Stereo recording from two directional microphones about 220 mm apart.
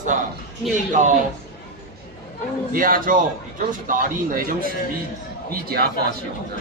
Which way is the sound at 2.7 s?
40° right (ahead or behind).